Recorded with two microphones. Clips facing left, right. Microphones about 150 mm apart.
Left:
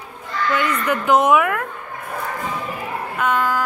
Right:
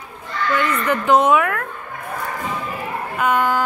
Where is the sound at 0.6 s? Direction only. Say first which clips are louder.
Right 1 dB; 5° left (ahead or behind).